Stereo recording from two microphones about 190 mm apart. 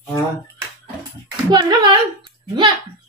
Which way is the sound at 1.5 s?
20° right (ahead or behind).